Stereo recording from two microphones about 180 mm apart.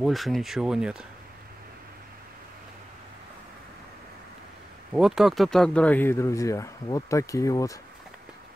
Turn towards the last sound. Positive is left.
turn(degrees=20)  # may be behind; listen again after turning